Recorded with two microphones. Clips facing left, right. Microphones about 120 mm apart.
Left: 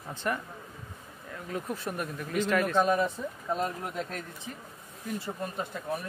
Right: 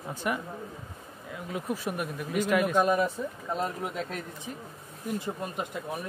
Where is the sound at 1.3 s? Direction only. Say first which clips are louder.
Right 2 dB; 10° right (ahead or behind).